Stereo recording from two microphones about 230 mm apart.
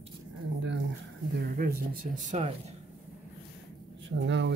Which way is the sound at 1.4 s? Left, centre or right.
Right.